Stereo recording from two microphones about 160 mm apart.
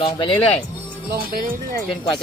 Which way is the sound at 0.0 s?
40° left (ahead or behind).